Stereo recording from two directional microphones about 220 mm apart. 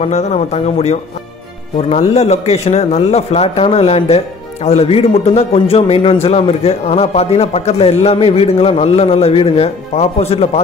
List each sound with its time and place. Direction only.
0.0 s a man's voice: 30° left (ahead or behind)